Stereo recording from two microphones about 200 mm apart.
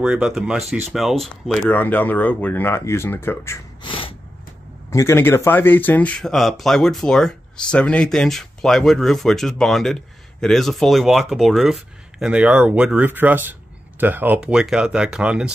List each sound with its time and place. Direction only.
0.0 s speech: 5° right (ahead or behind)
3.8 s snort: 25° left (ahead or behind)
4.9 s speech: 15° left (ahead or behind); by 15.5 s 5° right (ahead or behind)